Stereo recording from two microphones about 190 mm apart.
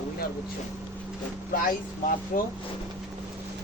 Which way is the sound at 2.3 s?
40° left (ahead or behind).